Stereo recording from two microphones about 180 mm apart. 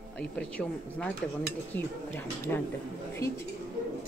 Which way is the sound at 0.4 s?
5° left (ahead or behind).